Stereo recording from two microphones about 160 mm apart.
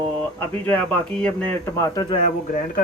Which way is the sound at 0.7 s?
10° left (ahead or behind).